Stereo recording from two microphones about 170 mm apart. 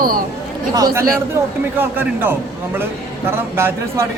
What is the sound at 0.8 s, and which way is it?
Speech, 20° right (ahead or behind).